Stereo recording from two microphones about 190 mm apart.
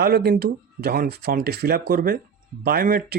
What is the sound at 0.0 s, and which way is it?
Speech, 55° right (ahead or behind).